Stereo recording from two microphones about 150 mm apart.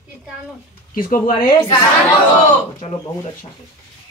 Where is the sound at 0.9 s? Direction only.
70° left (ahead or behind).